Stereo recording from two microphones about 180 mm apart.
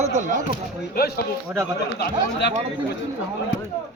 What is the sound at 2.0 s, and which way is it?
Speech, 70° left (ahead or behind).